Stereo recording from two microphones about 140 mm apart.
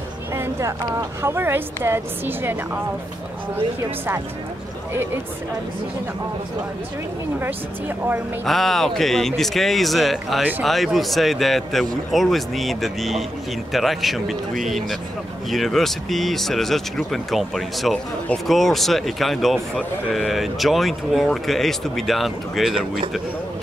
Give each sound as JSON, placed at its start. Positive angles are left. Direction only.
{"t": 0.3, "sound": "a sound", "side_deg": -20}
{"t": 0.8, "sound": "a woman's voice", "side_deg": -20}
{"t": 8.5, "sound": "speech", "side_deg": 0}